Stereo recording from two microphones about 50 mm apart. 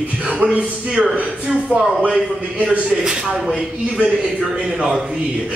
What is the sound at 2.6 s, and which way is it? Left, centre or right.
Speech, right.